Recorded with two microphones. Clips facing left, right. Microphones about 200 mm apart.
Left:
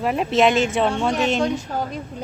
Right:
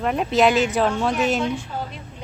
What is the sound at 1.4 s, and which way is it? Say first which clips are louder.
Speech: left 3 dB; 40° left (ahead or behind).